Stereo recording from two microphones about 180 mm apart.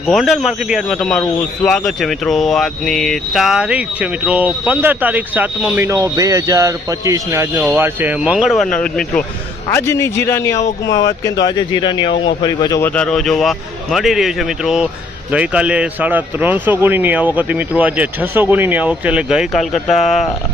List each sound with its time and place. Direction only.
0.1 s a man's voice: centre (ahead or behind)
11.4 s speech: 25° left (ahead or behind)
12.8 s a man's voice: 5° left (ahead or behind)